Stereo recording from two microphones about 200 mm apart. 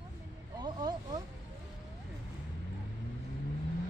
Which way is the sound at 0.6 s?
20° right (ahead or behind).